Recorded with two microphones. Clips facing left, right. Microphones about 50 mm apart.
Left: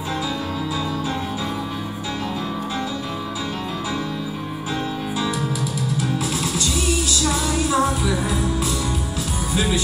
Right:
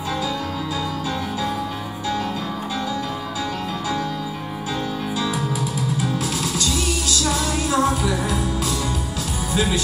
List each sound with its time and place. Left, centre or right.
6.6 s music: left